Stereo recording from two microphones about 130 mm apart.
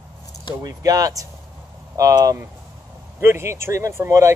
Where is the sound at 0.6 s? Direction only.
30° right (ahead or behind).